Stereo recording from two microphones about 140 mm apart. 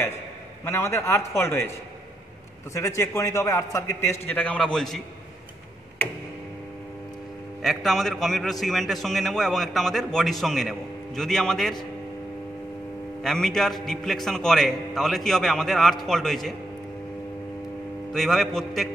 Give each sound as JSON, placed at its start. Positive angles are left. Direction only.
{"t": 0.7, "sound": "a man's voice", "side_deg": 20}
{"t": 3.2, "sound": "a man's voice", "side_deg": 25}
{"t": 7.6, "sound": "a man's voice", "side_deg": 0}
{"t": 13.2, "sound": "a man's voice", "side_deg": 5}
{"t": 18.1, "sound": "a man's voice", "side_deg": 0}